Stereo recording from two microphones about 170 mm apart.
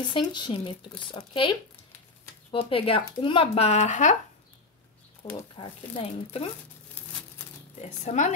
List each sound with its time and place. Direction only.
0.1 s speech: 25° left (ahead or behind)
2.7 s speech: 35° left (ahead or behind)
5.2 s speech: 30° left (ahead or behind)
7.8 s speech: 40° left (ahead or behind)